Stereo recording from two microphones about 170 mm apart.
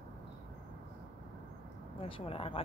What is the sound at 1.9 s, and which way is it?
Speech, 30° left (ahead or behind).